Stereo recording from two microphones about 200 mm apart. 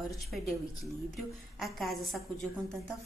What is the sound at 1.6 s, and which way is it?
Speech, centre (ahead or behind).